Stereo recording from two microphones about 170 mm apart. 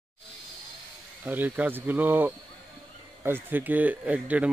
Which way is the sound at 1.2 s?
10° right (ahead or behind).